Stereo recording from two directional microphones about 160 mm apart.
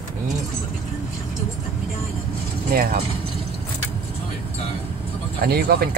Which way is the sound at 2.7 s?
65° right (ahead or behind).